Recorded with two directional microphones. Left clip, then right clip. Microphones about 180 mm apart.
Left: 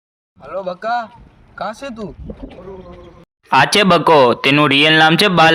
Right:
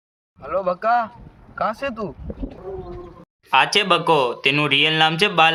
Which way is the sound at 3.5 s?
50° left (ahead or behind).